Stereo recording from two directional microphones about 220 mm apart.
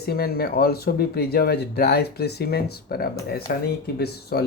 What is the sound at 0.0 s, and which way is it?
Speech, 45° left (ahead or behind).